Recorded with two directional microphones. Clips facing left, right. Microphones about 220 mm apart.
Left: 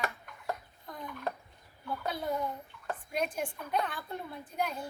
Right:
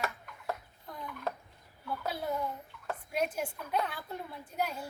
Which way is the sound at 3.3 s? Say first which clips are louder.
Even; 5° right (ahead or behind).